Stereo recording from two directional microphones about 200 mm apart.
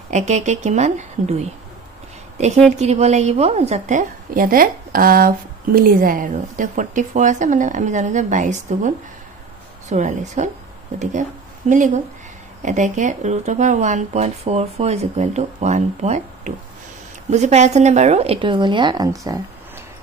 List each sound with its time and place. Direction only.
0.1 s a woman's voice: 35° right (ahead or behind); by 19.4 s 20° right (ahead or behind)